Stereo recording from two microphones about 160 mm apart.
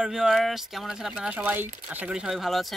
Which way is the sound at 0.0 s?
5° right (ahead or behind).